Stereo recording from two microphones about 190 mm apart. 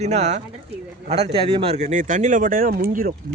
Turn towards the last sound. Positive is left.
turn(degrees=-50)  # may be behind; listen again after turning